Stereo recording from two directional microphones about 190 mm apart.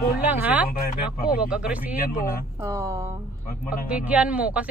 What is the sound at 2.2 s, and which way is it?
Speech, 50° left (ahead or behind).